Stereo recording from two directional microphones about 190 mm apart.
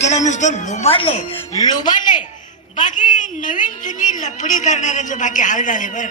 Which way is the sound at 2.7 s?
40° left (ahead or behind).